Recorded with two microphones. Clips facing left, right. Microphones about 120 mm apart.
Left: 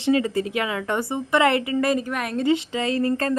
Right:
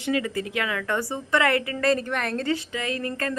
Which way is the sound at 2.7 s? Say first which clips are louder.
Left 7 dB; 30° left (ahead or behind).